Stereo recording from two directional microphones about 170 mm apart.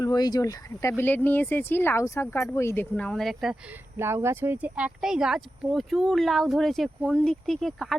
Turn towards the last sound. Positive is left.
turn(degrees=0)  # may be behind; listen again after turning